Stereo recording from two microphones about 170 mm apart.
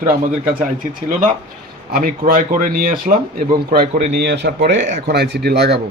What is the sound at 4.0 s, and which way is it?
Speech, 80° right.